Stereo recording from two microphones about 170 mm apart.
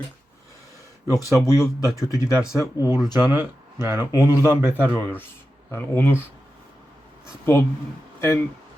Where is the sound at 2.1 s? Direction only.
15° left (ahead or behind).